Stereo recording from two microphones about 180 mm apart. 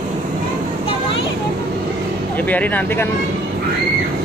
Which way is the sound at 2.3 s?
10° left (ahead or behind).